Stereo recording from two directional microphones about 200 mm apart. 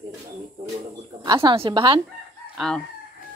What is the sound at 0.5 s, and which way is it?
Bird, 20° right (ahead or behind).